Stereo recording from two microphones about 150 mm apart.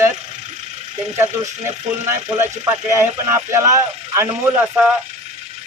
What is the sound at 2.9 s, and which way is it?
Speech, 15° right (ahead or behind).